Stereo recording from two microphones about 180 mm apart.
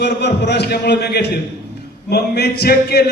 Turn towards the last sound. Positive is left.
turn(degrees=60)  # may be behind; listen again after turning